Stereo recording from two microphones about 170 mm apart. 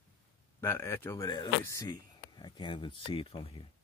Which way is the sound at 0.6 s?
15° left (ahead or behind).